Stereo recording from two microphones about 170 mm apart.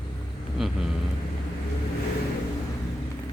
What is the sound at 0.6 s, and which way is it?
Speech, centre (ahead or behind).